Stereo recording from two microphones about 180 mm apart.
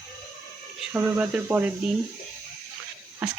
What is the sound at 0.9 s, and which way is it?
Speech, 10° right (ahead or behind).